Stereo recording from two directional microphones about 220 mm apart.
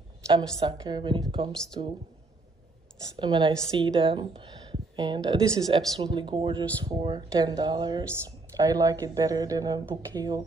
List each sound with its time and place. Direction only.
0.3 s speech: 20° right (ahead or behind)
3.2 s speech: 20° right (ahead or behind)